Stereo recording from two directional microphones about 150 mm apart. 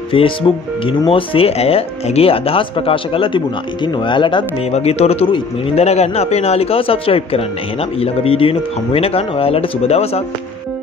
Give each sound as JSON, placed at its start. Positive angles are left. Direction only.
{"t": 0.1, "sound": "speech", "side_deg": 35}
{"t": 4.6, "sound": "a man's voice", "side_deg": 45}